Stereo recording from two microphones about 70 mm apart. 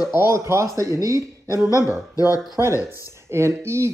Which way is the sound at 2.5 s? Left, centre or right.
Right.